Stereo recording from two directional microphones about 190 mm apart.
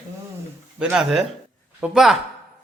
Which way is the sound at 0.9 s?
5° right (ahead or behind).